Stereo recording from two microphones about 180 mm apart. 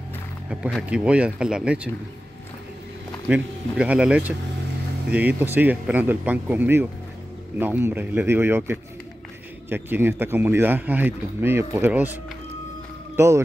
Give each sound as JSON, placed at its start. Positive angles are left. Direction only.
{"t": 0.5, "sound": "speech", "side_deg": -5}
{"t": 3.3, "sound": "speech", "side_deg": -5}